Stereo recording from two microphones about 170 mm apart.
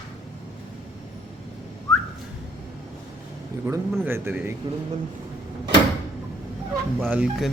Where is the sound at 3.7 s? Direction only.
15° right (ahead or behind).